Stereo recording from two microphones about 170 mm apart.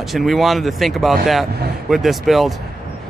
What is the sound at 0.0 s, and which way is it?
A man's voice, centre (ahead or behind).